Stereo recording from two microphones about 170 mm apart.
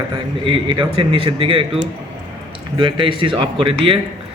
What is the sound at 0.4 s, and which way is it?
A man's voice, 30° right (ahead or behind).